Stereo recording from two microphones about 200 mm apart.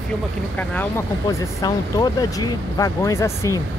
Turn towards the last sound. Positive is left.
turn(degrees=15)  # may be behind; listen again after turning